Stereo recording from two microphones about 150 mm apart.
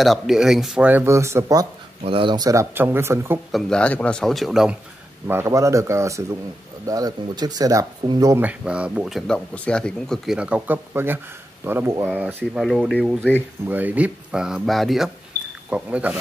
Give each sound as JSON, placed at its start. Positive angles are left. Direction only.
{"t": 0.0, "sound": "speech", "side_deg": 0}
{"t": 2.0, "sound": "speech", "side_deg": -35}
{"t": 3.5, "sound": "speech", "side_deg": 5}
{"t": 5.3, "sound": "speech", "side_deg": -20}
{"t": 8.4, "sound": "speech", "side_deg": -10}